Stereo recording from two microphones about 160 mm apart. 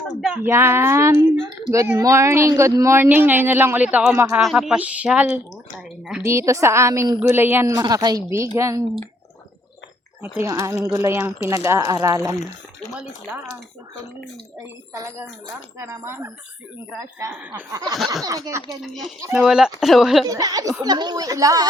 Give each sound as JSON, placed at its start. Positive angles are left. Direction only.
{"t": 0.4, "sound": "a woman's voice", "side_deg": -15}
{"t": 6.2, "sound": "a woman's voice", "side_deg": -20}
{"t": 10.4, "sound": "speech", "side_deg": -20}
{"t": 14.6, "sound": "a woman's voice", "side_deg": -15}
{"t": 17.9, "sound": "a woman's voice", "side_deg": 0}
{"t": 18.3, "sound": "speech", "side_deg": -20}
{"t": 18.8, "sound": "a woman's voice", "side_deg": 0}
{"t": 20.2, "sound": "speech", "side_deg": -25}